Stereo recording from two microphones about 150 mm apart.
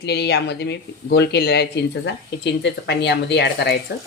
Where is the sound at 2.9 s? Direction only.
90° left.